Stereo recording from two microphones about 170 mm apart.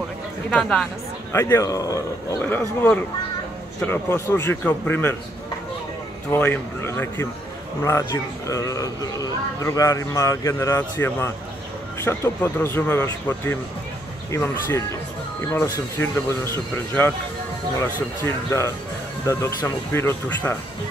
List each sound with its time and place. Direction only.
0.5 s speech: 5° left (ahead or behind)
1.3 s speech: 15° left (ahead or behind)
6.3 s speech: 10° left (ahead or behind)
18.2 s speech: 15° left (ahead or behind)